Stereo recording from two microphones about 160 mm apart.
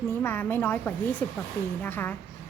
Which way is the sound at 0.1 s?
15° left (ahead or behind).